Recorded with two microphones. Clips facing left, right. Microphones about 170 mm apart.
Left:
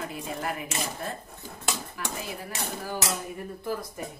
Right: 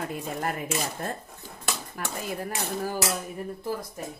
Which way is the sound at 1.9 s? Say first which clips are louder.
Right 3 dB; 45° right (ahead or behind).